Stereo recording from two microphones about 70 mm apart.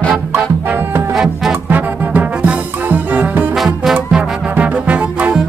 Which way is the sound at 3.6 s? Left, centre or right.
Centre.